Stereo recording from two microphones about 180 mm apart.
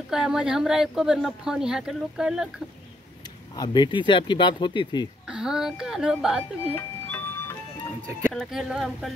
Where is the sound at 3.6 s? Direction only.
25° left (ahead or behind).